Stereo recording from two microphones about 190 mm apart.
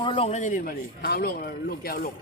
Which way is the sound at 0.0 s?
30° left (ahead or behind).